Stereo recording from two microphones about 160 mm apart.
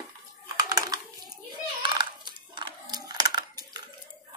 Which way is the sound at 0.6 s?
25° right (ahead or behind).